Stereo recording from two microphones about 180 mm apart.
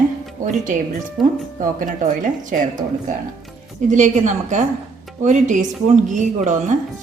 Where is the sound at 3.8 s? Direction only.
45° right (ahead or behind).